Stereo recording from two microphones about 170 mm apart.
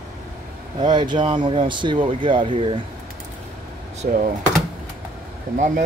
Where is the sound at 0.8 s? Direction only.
25° right (ahead or behind).